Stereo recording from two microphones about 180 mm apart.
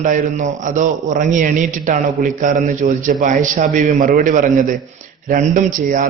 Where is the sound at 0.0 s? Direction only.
45° right (ahead or behind).